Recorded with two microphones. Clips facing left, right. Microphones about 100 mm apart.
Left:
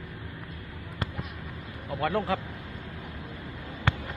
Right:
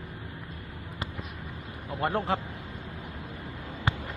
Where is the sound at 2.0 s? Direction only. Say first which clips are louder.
Even; 25° right (ahead or behind).